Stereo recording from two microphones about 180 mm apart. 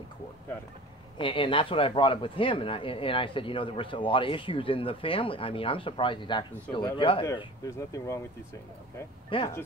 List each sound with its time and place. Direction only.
1.1 s speech: 30° left (ahead or behind)
9.3 s speech: 30° left (ahead or behind)